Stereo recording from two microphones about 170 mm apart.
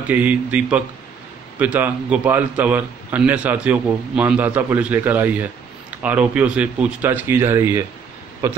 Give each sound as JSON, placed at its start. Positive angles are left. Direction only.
{"t": 0.1, "sound": "a man's voice", "side_deg": -10}